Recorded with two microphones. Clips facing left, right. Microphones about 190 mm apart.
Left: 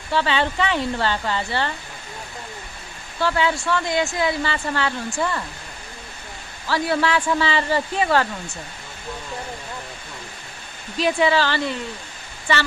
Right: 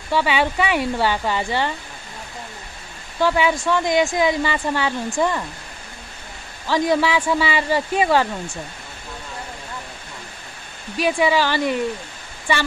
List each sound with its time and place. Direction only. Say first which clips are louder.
0.1 s speech: right 2 dB; 10° right (ahead or behind)
3.2 s speech: right 3 dB; 15° right (ahead or behind)
6.7 s speech: right 3 dB; 15° right (ahead or behind)
11.0 s speech: right 1 dB; 10° right (ahead or behind)